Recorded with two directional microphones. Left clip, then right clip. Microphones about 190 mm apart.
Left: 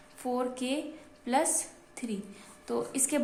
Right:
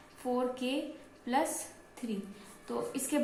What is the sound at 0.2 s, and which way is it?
A woman's voice, 60° left (ahead or behind).